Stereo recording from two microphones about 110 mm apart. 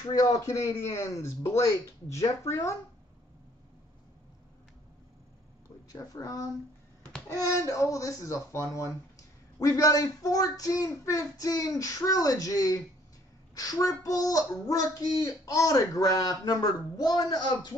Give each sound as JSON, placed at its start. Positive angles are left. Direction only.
{"t": 0.1, "sound": "a man's voice", "side_deg": 30}
{"t": 5.9, "sound": "a child's voice", "side_deg": 30}